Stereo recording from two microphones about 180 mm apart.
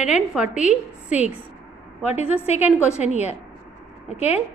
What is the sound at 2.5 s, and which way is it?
A woman's voice, 35° left (ahead or behind).